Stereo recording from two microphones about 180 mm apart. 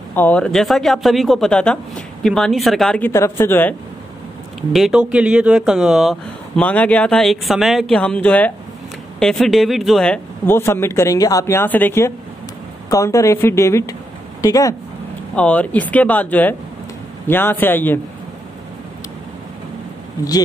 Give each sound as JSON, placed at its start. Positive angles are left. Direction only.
{"t": 0.1, "sound": "speech", "side_deg": 10}
{"t": 4.6, "sound": "speech", "side_deg": 0}
{"t": 15.3, "sound": "speech", "side_deg": 5}